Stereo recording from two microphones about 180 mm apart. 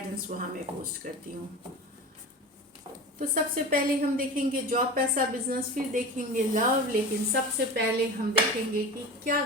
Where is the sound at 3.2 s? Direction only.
50° right (ahead or behind).